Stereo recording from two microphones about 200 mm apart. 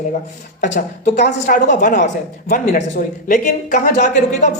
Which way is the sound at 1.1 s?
55° left (ahead or behind).